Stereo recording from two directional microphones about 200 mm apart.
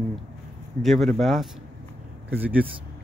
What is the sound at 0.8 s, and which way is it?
Speech, centre (ahead or behind).